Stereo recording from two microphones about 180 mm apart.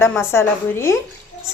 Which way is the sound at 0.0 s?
15° left (ahead or behind).